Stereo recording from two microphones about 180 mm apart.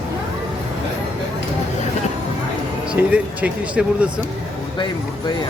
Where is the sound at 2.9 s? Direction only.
5° right (ahead or behind).